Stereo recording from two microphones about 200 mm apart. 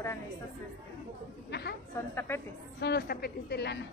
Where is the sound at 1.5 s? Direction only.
55° left (ahead or behind).